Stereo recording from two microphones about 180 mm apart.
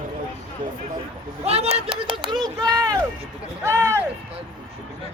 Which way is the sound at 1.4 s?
35° right (ahead or behind).